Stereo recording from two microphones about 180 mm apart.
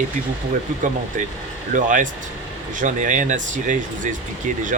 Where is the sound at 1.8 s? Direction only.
45° right (ahead or behind).